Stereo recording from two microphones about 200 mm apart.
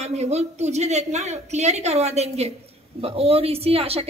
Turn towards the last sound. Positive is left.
turn(degrees=-30)  # may be behind; listen again after turning